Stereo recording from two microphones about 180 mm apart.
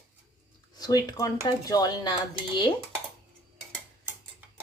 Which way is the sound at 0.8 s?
20° left (ahead or behind).